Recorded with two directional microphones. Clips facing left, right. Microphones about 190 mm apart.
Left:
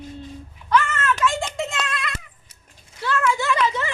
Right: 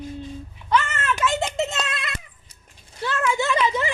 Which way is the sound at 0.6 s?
20° right (ahead or behind).